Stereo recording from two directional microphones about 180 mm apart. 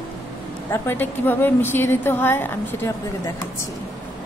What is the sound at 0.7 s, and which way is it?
A woman's voice, 10° left (ahead or behind).